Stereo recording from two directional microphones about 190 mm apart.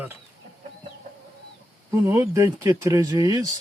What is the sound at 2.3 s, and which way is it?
Speech, 15° right (ahead or behind).